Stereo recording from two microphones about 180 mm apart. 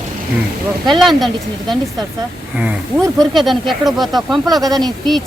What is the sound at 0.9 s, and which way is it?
Speech, centre (ahead or behind).